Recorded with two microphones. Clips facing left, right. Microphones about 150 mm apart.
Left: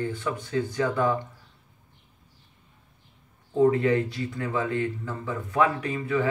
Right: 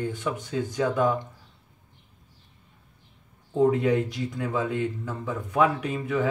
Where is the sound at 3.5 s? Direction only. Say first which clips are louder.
Left 1 dB; 10° right (ahead or behind).